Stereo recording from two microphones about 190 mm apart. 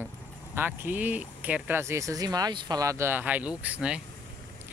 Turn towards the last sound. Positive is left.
turn(degrees=-5)  # may be behind; listen again after turning